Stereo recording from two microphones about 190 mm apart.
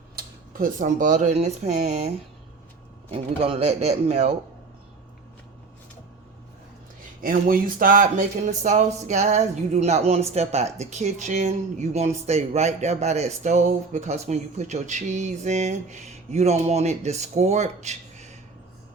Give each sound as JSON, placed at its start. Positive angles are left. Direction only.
{"t": 0.2, "sound": "speech", "side_deg": -50}
{"t": 3.1, "sound": "speech", "side_deg": -30}
{"t": 7.2, "sound": "speech", "side_deg": -50}